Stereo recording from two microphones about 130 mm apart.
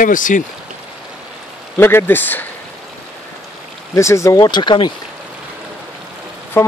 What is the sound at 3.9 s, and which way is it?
Speech, 25° left (ahead or behind).